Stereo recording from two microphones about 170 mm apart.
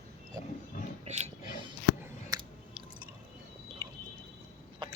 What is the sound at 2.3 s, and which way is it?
Chewing, 25° right (ahead or behind).